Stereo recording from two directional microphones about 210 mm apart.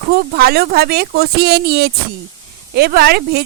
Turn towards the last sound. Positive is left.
turn(degrees=-50)  # may be behind; listen again after turning